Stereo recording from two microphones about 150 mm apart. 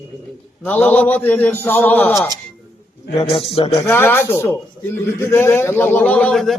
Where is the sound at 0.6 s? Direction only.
10° left (ahead or behind).